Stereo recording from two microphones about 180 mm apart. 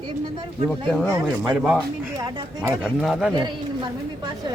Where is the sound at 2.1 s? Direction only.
15° right (ahead or behind).